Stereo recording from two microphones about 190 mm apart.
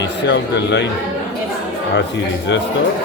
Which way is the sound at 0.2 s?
65° left (ahead or behind).